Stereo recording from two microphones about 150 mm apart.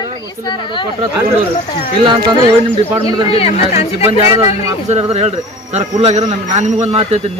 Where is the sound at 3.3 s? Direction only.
40° left (ahead or behind).